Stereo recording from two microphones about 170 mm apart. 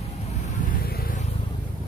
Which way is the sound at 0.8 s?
60° left (ahead or behind).